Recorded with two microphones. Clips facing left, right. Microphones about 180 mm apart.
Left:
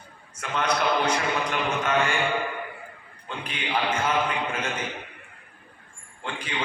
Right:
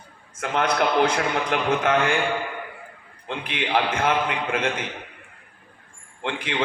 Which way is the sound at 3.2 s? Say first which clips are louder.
Right 5 dB; 60° right (ahead or behind).